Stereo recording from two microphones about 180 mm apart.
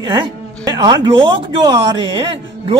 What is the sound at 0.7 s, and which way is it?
Speech, 20° right (ahead or behind).